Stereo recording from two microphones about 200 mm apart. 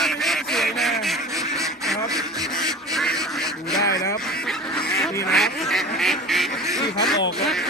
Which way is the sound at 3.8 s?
15° left (ahead or behind).